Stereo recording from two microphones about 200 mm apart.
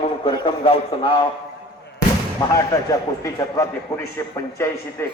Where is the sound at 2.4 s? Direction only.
15° left (ahead or behind).